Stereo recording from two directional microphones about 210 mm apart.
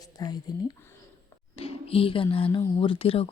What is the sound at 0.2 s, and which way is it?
Speech, 20° left (ahead or behind).